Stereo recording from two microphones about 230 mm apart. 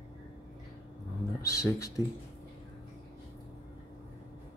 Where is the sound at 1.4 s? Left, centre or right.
Centre.